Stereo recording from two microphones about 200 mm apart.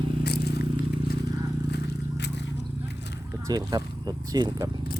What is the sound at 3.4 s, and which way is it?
Speech, 20° right (ahead or behind).